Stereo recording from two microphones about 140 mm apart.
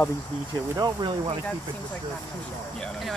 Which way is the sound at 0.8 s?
35° right (ahead or behind).